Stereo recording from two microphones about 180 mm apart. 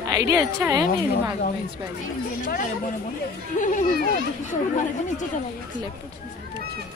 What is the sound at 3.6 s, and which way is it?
Speech, 45° left (ahead or behind).